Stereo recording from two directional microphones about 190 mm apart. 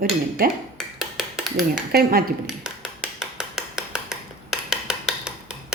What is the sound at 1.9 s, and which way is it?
Speech, 50° right (ahead or behind).